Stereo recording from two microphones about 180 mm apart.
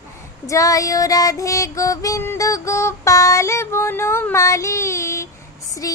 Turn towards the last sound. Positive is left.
turn(degrees=20)  # may be behind; listen again after turning